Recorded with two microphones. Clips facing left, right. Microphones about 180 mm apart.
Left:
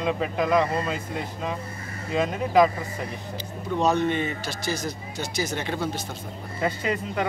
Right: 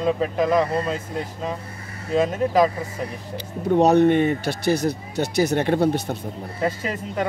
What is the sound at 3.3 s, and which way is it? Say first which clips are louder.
Speech: right 11 dB; 65° right (ahead or behind).